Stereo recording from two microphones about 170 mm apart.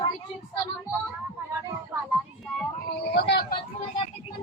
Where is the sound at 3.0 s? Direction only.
80° left.